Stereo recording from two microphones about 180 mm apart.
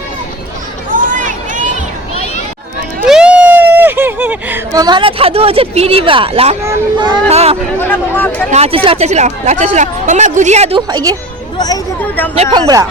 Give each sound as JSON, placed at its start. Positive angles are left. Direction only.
{"t": 0.9, "sound": "a sound", "side_deg": -45}
{"t": 3.1, "sound": "a sound", "side_deg": -5}
{"t": 6.7, "sound": "a child's voice", "side_deg": -25}
{"t": 7.3, "sound": "speech", "side_deg": -35}
{"t": 7.8, "sound": "speech", "side_deg": 10}
{"t": 8.4, "sound": "speech", "side_deg": -35}
{"t": 11.5, "sound": "speech", "side_deg": 20}
{"t": 12.4, "sound": "a child's voice", "side_deg": -25}